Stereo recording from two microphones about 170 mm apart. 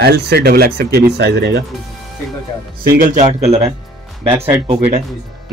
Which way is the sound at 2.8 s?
55° right (ahead or behind).